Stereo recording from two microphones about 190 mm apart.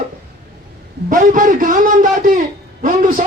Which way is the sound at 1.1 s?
45° right (ahead or behind).